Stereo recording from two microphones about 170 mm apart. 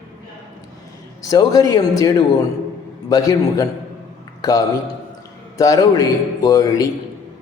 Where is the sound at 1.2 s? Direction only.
20° left (ahead or behind).